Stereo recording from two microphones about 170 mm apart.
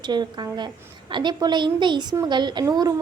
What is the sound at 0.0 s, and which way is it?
A woman's voice, 25° right (ahead or behind).